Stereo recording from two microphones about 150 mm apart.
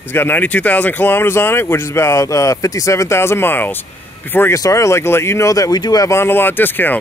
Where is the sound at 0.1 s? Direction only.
15° left (ahead or behind).